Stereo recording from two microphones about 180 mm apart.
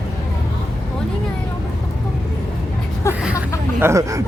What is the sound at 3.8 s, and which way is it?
Speech, 15° right (ahead or behind).